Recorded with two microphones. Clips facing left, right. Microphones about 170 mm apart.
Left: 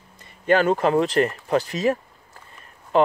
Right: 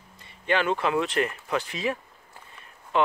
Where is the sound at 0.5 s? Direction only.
40° left (ahead or behind).